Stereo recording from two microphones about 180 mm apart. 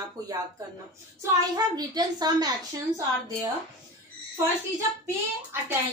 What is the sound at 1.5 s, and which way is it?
A child's voice, 20° right (ahead or behind).